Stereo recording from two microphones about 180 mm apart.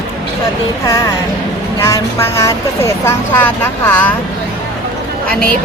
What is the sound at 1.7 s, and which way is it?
A woman's voice, 15° left (ahead or behind).